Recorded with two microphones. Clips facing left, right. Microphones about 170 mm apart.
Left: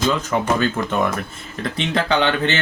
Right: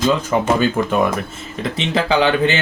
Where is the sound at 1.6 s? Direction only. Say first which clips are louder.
Right 2 dB; 5° right (ahead or behind).